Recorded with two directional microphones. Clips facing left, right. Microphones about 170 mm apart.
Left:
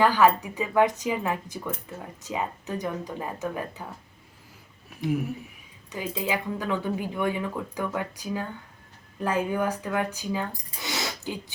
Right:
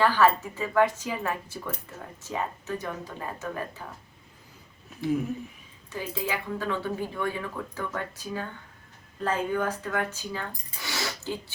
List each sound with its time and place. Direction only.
0.0 s speech: 15° left (ahead or behind)
4.9 s speech: 10° left (ahead or behind)